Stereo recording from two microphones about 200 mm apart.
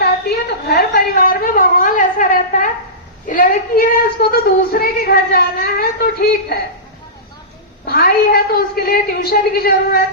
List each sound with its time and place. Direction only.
0.0 s a sound: 50° left (ahead or behind)
3.2 s speech: 45° left (ahead or behind)
7.9 s a woman's voice: 50° left (ahead or behind)